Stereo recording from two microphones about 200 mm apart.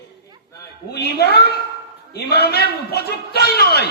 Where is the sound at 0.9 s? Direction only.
55° left (ahead or behind).